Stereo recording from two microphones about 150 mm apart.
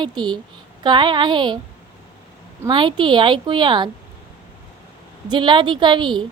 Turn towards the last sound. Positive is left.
turn(degrees=-30)  # may be behind; listen again after turning